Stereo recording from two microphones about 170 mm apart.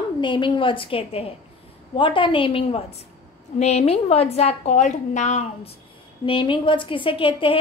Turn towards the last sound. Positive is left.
turn(degrees=30)  # may be behind; listen again after turning